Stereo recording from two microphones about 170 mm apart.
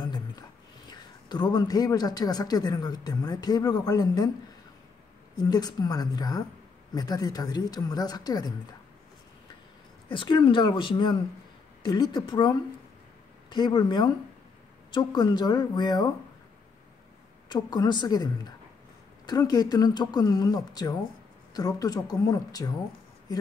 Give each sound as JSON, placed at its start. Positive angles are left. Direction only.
{"t": 0.0, "sound": "speech", "side_deg": 25}
{"t": 5.3, "sound": "speech", "side_deg": 25}
{"t": 10.0, "sound": "speech", "side_deg": 30}
{"t": 17.5, "sound": "speech", "side_deg": 25}